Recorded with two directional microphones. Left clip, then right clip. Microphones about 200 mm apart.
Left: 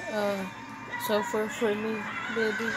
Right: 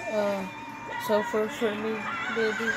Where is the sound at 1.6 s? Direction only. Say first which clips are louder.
Left 4 dB; 15° left (ahead or behind).